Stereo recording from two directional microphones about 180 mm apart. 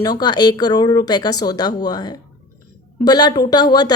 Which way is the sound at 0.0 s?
20° left (ahead or behind).